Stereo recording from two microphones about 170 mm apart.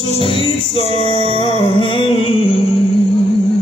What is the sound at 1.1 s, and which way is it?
Music, 35° right (ahead or behind).